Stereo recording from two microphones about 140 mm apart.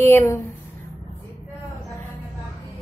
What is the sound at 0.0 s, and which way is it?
Speech, 15° left (ahead or behind).